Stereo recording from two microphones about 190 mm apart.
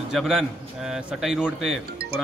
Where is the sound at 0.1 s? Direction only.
Centre (ahead or behind).